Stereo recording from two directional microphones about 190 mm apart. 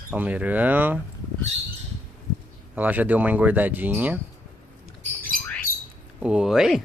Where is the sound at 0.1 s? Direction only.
5° right (ahead or behind).